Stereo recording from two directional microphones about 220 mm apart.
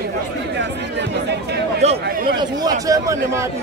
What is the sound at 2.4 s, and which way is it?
A man's voice, 15° right (ahead or behind).